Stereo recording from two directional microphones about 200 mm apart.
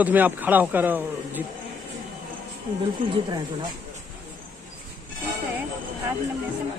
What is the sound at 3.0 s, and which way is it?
Speech, 25° right (ahead or behind).